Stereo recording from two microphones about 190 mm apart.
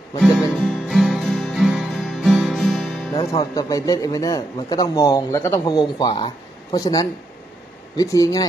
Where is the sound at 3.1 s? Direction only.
20° left (ahead or behind).